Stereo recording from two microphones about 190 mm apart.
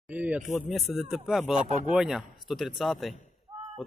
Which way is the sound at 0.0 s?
5° right (ahead or behind).